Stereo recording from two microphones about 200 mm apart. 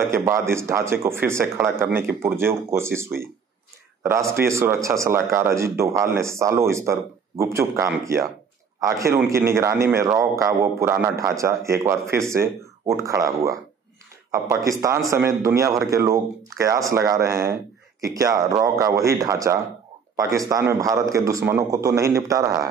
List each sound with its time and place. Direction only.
0.1 s speech: 15° right (ahead or behind)